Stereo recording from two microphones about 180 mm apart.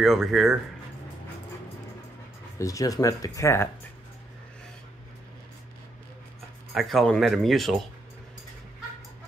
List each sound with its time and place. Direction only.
0.0 s speech: centre (ahead or behind)
2.6 s speech: 20° left (ahead or behind)
6.7 s speech: centre (ahead or behind)